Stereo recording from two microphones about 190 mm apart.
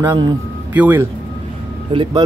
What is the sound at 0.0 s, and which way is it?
Speech, 15° right (ahead or behind).